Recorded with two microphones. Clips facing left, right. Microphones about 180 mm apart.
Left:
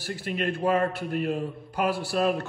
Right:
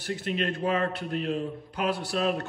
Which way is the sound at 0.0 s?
5° left (ahead or behind).